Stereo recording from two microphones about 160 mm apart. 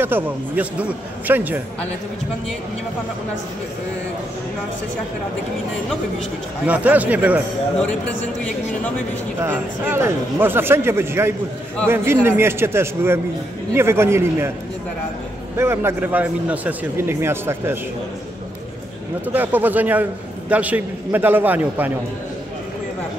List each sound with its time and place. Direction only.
0.0 s a man's voice: 10° right (ahead or behind)
6.6 s a man's voice: 10° right (ahead or behind)
9.4 s a man's voice: 15° right (ahead or behind)
15.5 s a man's voice: 15° right (ahead or behind)
19.3 s a man's voice: 10° right (ahead or behind)